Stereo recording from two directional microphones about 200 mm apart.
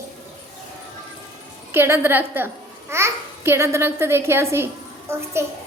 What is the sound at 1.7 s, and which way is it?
A child's voice, 10° right (ahead or behind).